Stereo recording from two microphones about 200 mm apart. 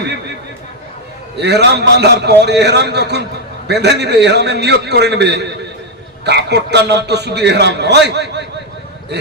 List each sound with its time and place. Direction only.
1.4 s a man's voice: 55° right (ahead or behind)